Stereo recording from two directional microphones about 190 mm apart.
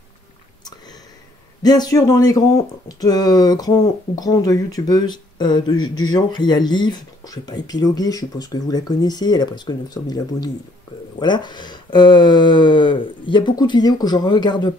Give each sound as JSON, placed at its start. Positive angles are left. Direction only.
{"t": 1.6, "sound": "speech", "side_deg": 20}
{"t": 5.8, "sound": "speech", "side_deg": 90}
{"t": 6.1, "sound": "speech", "side_deg": 20}